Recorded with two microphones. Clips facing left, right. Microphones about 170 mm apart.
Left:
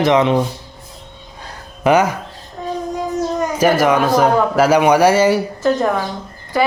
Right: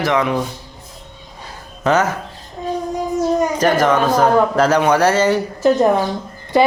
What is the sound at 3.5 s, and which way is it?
A man's voice, 10° left (ahead or behind).